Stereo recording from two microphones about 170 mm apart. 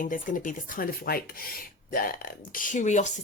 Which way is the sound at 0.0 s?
55° left (ahead or behind).